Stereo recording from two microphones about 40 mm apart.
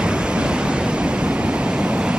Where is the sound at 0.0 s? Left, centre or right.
Right.